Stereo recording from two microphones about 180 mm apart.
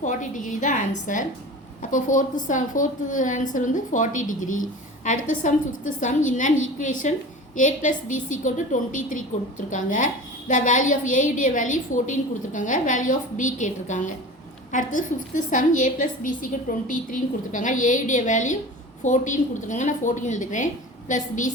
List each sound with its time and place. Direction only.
0.0 s a woman's voice: 45° left (ahead or behind)